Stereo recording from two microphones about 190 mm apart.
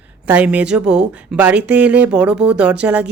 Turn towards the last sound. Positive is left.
turn(degrees=-5)  # may be behind; listen again after turning